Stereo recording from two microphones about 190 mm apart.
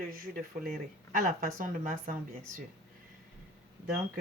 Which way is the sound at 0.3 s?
45° right (ahead or behind).